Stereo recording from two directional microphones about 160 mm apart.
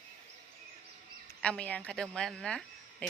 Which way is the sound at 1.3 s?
5° left (ahead or behind).